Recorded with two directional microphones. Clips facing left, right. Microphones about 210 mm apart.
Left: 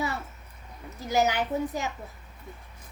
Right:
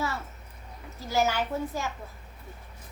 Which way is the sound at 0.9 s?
20° left (ahead or behind).